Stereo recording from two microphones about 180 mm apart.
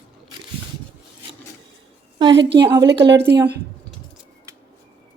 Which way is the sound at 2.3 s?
70° right (ahead or behind).